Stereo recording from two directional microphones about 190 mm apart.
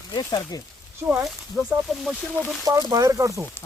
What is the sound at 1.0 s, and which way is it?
Speech, 5° right (ahead or behind).